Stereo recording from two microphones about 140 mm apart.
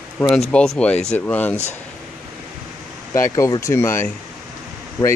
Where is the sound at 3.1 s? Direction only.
20° left (ahead or behind).